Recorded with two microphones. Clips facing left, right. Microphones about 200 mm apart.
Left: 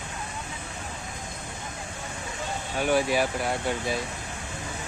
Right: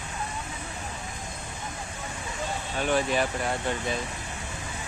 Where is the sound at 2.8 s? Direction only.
10° left (ahead or behind).